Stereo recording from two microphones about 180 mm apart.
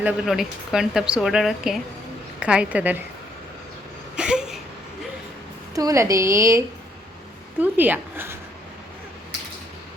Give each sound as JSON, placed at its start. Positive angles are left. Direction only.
{"t": 0.0, "sound": "speech", "side_deg": 0}
{"t": 4.2, "sound": "a sound", "side_deg": -5}
{"t": 5.7, "sound": "speech", "side_deg": -20}
{"t": 7.6, "sound": "speech", "side_deg": -10}